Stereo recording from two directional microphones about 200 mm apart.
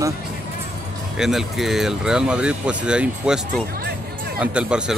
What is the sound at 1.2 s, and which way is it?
Speech, centre (ahead or behind).